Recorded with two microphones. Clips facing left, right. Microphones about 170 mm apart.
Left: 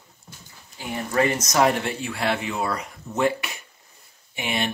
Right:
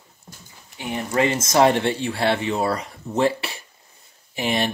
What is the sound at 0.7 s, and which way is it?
Speech, 20° right (ahead or behind).